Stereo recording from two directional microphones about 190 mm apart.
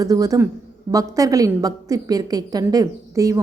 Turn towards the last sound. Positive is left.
turn(degrees=-15)  # may be behind; listen again after turning